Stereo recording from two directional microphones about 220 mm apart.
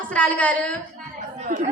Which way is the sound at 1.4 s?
35° right (ahead or behind).